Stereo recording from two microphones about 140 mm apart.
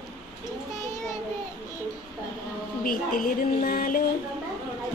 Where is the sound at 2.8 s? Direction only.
80° left.